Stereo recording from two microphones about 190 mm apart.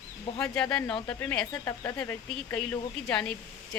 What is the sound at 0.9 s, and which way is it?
Speech, 25° left (ahead or behind).